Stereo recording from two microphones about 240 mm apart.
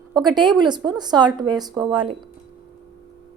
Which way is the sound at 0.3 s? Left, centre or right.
Centre.